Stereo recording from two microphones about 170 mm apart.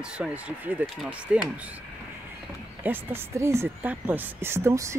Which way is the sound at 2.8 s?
10° right (ahead or behind).